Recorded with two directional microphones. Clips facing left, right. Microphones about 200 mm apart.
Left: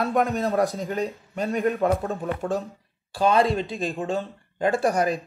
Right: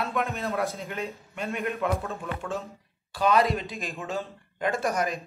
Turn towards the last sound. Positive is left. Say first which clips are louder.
# left 5 dB
turn(degrees=35)  # may be behind; listen again after turning